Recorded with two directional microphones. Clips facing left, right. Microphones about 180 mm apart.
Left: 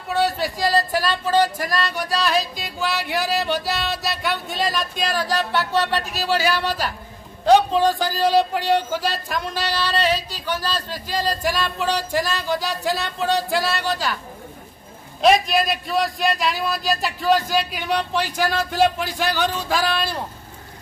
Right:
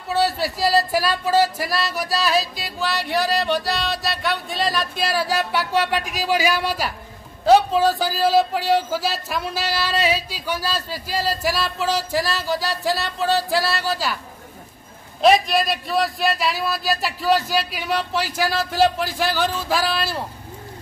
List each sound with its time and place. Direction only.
0.1 s speech: 5° right (ahead or behind)
15.2 s speech: centre (ahead or behind)